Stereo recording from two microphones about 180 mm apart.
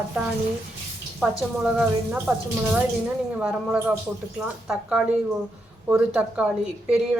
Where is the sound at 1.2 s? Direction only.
5° right (ahead or behind).